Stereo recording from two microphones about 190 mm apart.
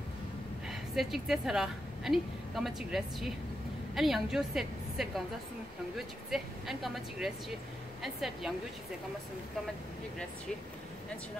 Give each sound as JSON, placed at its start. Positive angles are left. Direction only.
{"t": 0.7, "sound": "a woman's voice", "side_deg": 0}